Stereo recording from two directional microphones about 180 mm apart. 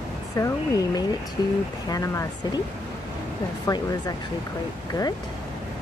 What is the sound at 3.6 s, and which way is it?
Speech, 20° left (ahead or behind).